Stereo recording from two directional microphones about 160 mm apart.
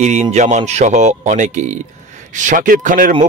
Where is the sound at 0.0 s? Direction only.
50° right (ahead or behind).